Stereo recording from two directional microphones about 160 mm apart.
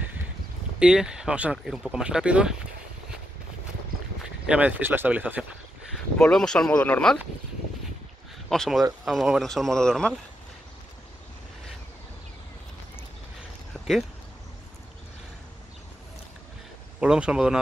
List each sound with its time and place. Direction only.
0.7 s speech: 5° right (ahead or behind)
4.5 s speech: 10° right (ahead or behind)
6.1 s speech: 5° left (ahead or behind)
8.5 s speech: centre (ahead or behind)
13.7 s a sound: 5° right (ahead or behind)
17.0 s speech: 5° right (ahead or behind)